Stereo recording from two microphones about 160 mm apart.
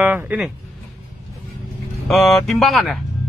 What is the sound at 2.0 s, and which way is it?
Speech, centre (ahead or behind).